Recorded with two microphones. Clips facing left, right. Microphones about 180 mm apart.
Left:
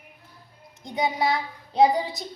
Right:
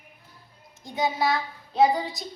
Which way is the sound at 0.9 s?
20° left (ahead or behind).